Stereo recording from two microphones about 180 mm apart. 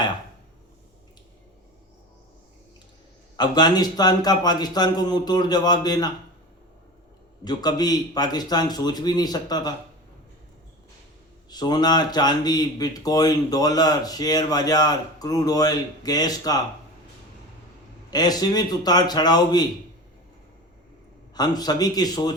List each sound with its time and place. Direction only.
3.3 s a man's voice: 25° left (ahead or behind)
7.4 s a man's voice: 20° left (ahead or behind)
11.4 s a man's voice: 20° left (ahead or behind)
18.1 s a man's voice: 20° left (ahead or behind)
21.3 s a man's voice: 20° left (ahead or behind)